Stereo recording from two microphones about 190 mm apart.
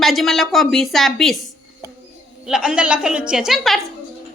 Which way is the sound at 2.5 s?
5° right (ahead or behind).